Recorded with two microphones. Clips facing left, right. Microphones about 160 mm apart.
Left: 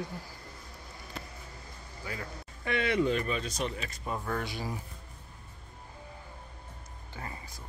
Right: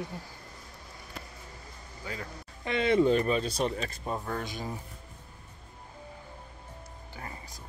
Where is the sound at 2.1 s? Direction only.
25° right (ahead or behind).